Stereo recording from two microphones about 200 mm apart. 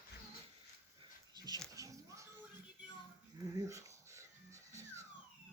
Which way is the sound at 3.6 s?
15° right (ahead or behind).